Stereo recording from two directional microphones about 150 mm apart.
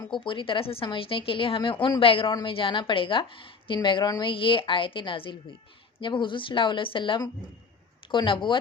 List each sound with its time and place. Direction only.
0.0 s a woman's voice: 30° left (ahead or behind)